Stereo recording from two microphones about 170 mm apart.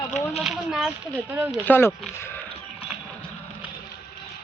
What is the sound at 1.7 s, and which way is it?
Speech, 15° left (ahead or behind).